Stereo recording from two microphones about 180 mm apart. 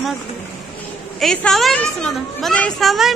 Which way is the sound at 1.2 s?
5° left (ahead or behind).